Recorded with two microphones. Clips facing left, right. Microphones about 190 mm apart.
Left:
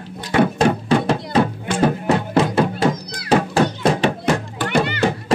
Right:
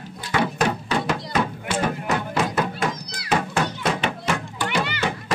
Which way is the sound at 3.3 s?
35° left (ahead or behind).